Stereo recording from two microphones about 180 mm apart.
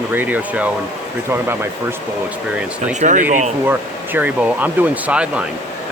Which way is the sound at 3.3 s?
45° right (ahead or behind).